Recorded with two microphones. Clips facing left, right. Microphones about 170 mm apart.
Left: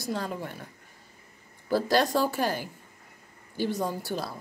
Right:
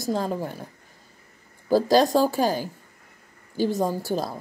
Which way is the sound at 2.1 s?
40° right (ahead or behind).